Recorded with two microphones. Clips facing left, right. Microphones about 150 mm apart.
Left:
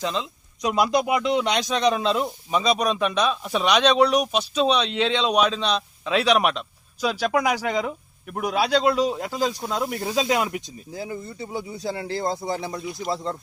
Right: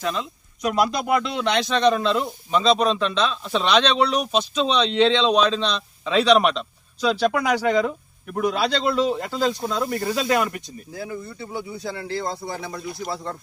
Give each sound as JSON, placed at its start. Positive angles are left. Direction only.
{"t": 0.7, "sound": "a man's voice", "side_deg": 20}